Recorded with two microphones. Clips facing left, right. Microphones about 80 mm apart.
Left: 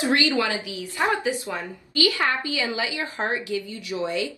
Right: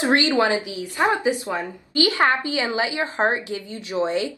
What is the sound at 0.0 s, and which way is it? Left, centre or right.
Speech, right.